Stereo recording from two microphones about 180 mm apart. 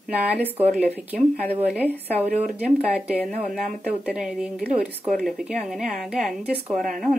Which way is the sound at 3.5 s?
Centre (ahead or behind).